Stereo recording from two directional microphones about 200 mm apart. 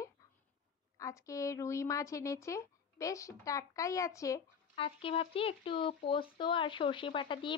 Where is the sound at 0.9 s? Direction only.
15° left (ahead or behind).